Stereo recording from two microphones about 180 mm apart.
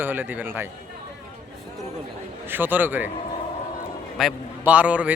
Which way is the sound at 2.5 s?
10° right (ahead or behind).